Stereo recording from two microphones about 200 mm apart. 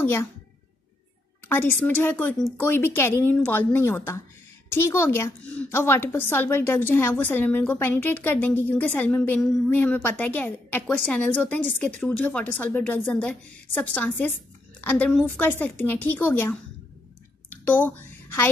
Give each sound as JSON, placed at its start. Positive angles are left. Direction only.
{"t": 0.0, "sound": "a woman's voice", "side_deg": 10}
{"t": 1.5, "sound": "a woman's voice", "side_deg": 10}
{"t": 17.6, "sound": "a woman's voice", "side_deg": 10}